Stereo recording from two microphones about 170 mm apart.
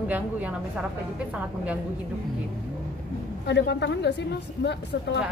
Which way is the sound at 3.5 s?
85° left.